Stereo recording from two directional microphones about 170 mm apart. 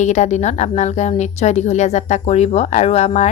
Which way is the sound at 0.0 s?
45° left (ahead or behind).